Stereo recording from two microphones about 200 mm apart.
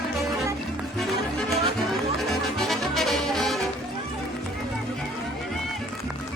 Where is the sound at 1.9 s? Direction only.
Centre (ahead or behind).